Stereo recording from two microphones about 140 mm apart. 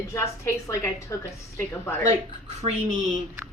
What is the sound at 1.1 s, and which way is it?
A woman's voice, 20° left (ahead or behind).